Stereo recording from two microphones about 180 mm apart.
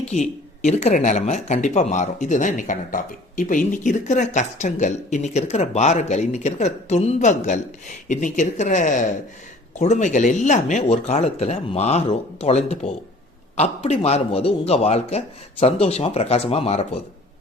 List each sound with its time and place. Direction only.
0.1 s speech: 40° left (ahead or behind)